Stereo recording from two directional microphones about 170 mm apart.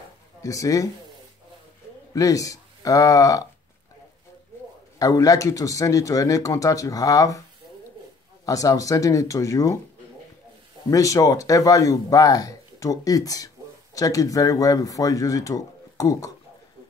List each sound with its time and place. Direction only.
0.4 s speech: 20° left (ahead or behind)
2.1 s speech: 20° left (ahead or behind)
4.9 s speech: 20° left (ahead or behind)
8.5 s speech: 20° left (ahead or behind)
10.9 s speech: 20° left (ahead or behind)